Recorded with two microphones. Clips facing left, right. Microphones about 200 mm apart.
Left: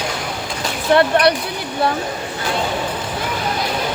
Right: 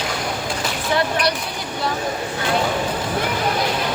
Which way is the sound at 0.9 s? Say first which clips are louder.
Left 7 dB; 60° left (ahead or behind).